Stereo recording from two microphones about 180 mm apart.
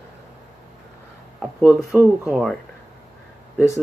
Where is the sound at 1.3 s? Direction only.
Centre (ahead or behind).